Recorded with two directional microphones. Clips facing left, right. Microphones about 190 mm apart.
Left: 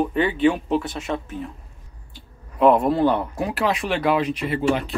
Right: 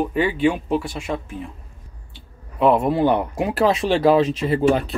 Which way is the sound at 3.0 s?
15° right (ahead or behind).